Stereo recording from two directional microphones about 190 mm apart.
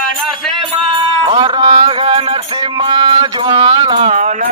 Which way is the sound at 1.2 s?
25° right (ahead or behind).